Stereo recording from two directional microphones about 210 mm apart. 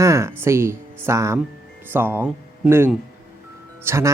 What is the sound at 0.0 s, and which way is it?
Speech, 15° right (ahead or behind).